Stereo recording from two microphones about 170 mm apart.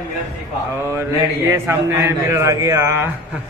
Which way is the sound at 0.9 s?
15° right (ahead or behind).